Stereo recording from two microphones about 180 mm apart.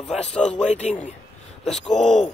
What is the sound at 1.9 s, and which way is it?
Speech, 5° left (ahead or behind).